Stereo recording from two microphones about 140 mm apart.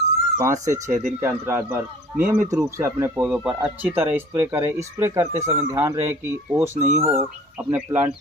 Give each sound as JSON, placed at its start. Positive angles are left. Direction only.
{"t": 0.4, "sound": "speech", "side_deg": -20}
{"t": 6.8, "sound": "speech", "side_deg": -55}
{"t": 7.5, "sound": "speech", "side_deg": -15}